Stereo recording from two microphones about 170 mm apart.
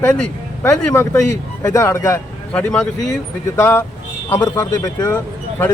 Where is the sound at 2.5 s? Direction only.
5° left (ahead or behind).